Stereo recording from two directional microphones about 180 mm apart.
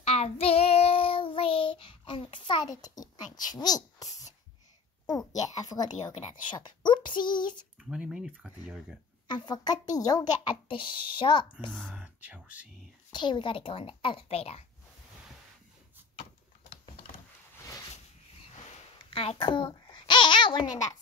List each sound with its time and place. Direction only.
0.0 s child singing: 35° left (ahead or behind)
3.3 s a child's voice: 20° left (ahead or behind)
7.9 s speech: 5° right (ahead or behind)
9.3 s a woman's voice: 25° left (ahead or behind)
11.9 s speech: 5° right (ahead or behind)
13.1 s a woman's voice: 25° left (ahead or behind)
16.2 s a sound: 30° left (ahead or behind)
18.6 s babbling: 30° left (ahead or behind)